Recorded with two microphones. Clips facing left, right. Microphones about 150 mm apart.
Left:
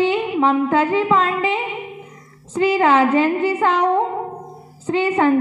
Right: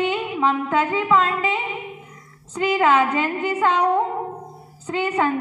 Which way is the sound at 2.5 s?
30° left (ahead or behind).